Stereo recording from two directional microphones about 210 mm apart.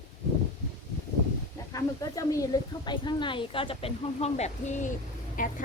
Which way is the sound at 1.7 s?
15° left (ahead or behind).